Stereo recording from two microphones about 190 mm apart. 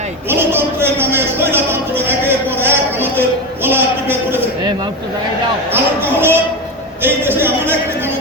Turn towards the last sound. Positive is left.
turn(degrees=-10)  # may be behind; listen again after turning